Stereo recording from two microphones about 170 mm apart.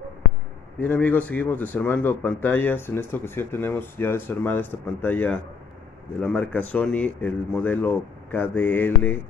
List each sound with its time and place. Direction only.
0.7 s speech: 10° left (ahead or behind)